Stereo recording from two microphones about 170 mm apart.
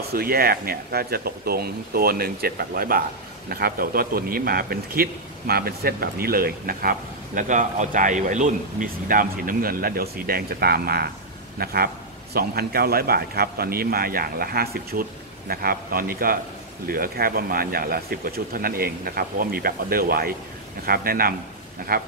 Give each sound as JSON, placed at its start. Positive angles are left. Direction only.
{"t": 0.1, "sound": "speech", "side_deg": -60}